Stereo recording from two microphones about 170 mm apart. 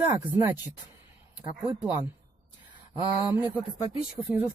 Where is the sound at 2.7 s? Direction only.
30° right (ahead or behind).